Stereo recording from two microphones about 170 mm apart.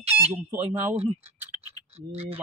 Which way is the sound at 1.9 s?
35° right (ahead or behind).